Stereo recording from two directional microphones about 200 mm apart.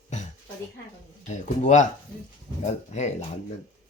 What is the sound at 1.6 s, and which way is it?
Speech, 35° left (ahead or behind).